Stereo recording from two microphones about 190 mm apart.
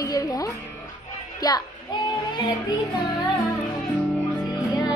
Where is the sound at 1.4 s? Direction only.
20° left (ahead or behind).